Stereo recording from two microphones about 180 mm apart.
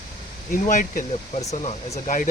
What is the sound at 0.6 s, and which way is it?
Speech, 45° left (ahead or behind).